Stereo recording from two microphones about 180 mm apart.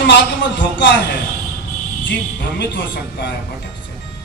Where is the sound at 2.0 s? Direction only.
85° left.